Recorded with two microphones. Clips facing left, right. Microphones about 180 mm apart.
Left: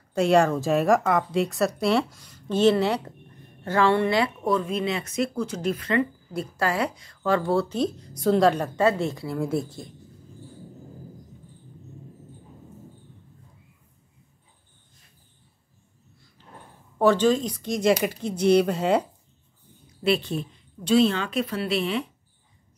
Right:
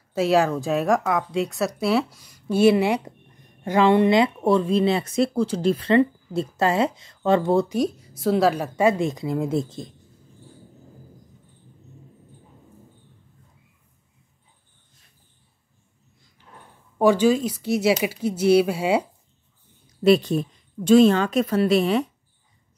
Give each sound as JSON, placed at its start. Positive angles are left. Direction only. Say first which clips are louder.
{"t": 0.1, "sound": "speech", "louder": "even", "side_deg": -5}
{"t": 17.0, "sound": "speech", "louder": "right 2 dB", "side_deg": -10}
{"t": 20.0, "sound": "a woman's voice", "louder": "right 7 dB", "side_deg": -40}